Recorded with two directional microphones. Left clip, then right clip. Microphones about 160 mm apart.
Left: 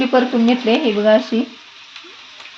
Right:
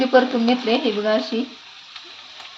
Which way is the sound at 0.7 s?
65° left (ahead or behind).